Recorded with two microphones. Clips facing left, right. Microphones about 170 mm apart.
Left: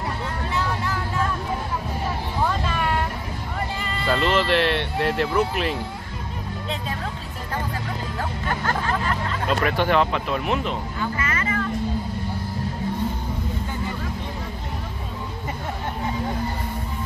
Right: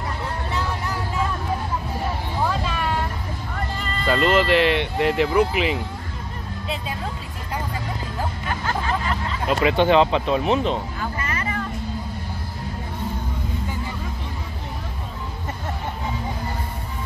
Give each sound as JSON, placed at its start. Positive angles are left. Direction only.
{"t": 2.4, "sound": "a sound", "side_deg": 0}
{"t": 3.7, "sound": "music", "side_deg": 5}
{"t": 4.3, "sound": "speech", "side_deg": -10}
{"t": 8.6, "sound": "vehicle", "side_deg": 0}
{"t": 9.7, "sound": "speech", "side_deg": -20}
{"t": 11.0, "sound": "vehicle", "side_deg": -35}